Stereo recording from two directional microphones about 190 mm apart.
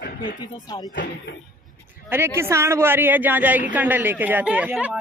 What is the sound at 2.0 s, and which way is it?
A man's voice, 15° right (ahead or behind).